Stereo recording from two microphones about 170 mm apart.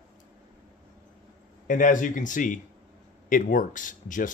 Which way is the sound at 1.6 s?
50° left (ahead or behind).